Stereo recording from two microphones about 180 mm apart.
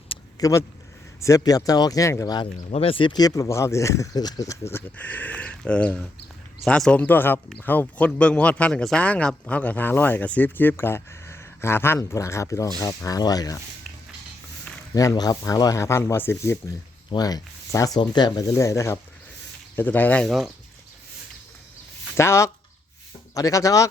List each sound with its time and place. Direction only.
0.3 s speech: 20° left (ahead or behind)
2.6 s speech: 35° left (ahead or behind); by 13.6 s 20° left (ahead or behind)
14.9 s speech: 20° left (ahead or behind); by 20.5 s centre (ahead or behind)
22.2 s speech: 15° left (ahead or behind)